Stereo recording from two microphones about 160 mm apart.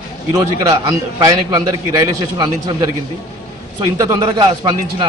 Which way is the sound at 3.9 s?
20° right (ahead or behind).